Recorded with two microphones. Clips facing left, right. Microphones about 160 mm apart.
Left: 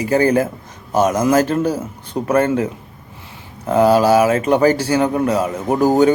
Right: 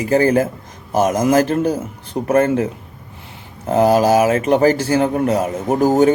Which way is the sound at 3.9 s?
45° right (ahead or behind).